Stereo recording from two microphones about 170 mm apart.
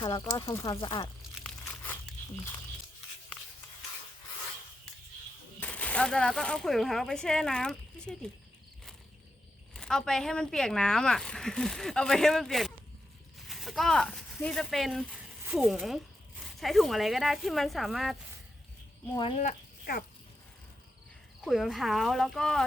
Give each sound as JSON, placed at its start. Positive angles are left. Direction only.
{"t": 0.0, "sound": "speech", "side_deg": 25}
{"t": 1.4, "sound": "crumpling", "side_deg": 10}
{"t": 5.5, "sound": "speech", "side_deg": 10}
{"t": 9.7, "sound": "speech", "side_deg": 5}
{"t": 19.1, "sound": "speech", "side_deg": 30}
{"t": 19.4, "sound": "speech", "side_deg": 50}
{"t": 21.4, "sound": "speech", "side_deg": 0}